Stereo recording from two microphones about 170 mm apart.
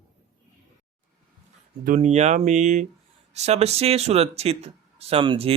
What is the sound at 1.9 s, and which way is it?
Speech, 45° right (ahead or behind).